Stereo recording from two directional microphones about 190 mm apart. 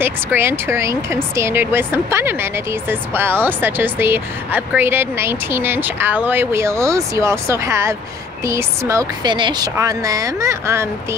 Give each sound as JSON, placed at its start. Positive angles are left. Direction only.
{"t": 0.0, "sound": "speech", "side_deg": -10}